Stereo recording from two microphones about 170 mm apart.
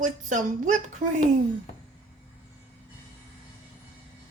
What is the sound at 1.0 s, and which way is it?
Speech, 50° right (ahead or behind).